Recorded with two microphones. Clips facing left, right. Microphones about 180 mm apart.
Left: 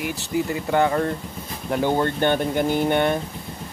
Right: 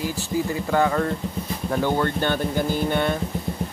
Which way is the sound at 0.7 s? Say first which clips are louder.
Left 1 dB; 30° left (ahead or behind).